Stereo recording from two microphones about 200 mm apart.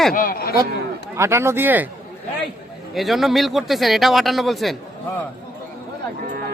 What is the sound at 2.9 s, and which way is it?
Speech, centre (ahead or behind).